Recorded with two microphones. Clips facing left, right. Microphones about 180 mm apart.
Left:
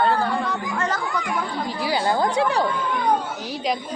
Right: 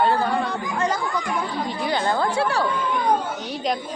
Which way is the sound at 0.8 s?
15° right (ahead or behind).